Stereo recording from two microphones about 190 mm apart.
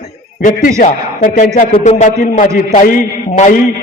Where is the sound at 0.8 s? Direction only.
40° left (ahead or behind).